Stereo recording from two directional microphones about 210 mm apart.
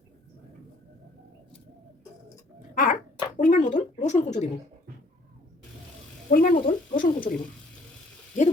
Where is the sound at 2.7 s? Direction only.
40° left (ahead or behind).